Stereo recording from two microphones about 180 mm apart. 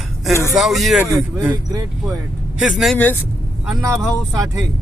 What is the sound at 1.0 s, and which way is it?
Speech, 15° right (ahead or behind).